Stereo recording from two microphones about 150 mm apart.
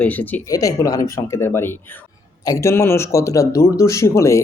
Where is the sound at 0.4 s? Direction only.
20° left (ahead or behind).